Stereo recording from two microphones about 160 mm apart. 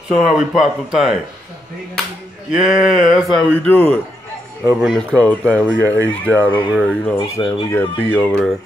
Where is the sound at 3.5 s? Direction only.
10° left (ahead or behind).